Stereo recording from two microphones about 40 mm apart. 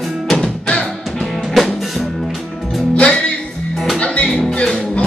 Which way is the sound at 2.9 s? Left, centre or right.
Left.